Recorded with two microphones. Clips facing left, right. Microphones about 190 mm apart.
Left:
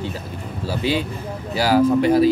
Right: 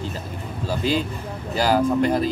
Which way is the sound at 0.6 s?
5° left (ahead or behind).